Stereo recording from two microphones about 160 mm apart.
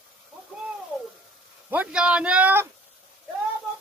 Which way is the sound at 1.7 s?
5° right (ahead or behind).